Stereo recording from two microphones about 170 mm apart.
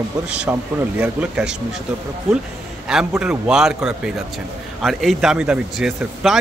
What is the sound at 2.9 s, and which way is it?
A man's voice, 5° right (ahead or behind).